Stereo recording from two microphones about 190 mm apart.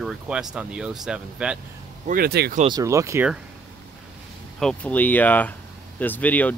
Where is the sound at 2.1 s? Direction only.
55° right (ahead or behind).